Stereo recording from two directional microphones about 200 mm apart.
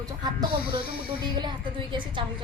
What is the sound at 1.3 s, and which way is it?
Speech, 20° right (ahead or behind).